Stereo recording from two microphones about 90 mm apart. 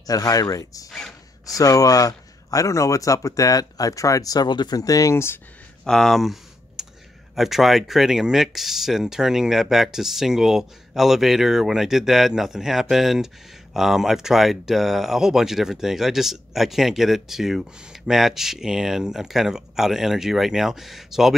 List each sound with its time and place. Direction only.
0.0 s speech: 40° left (ahead or behind)
5.1 s speech: 25° left (ahead or behind)
5.9 s speech: 5° left (ahead or behind)
6.8 s computer keyboard: 5° right (ahead or behind)
7.3 s speech: 5° right (ahead or behind)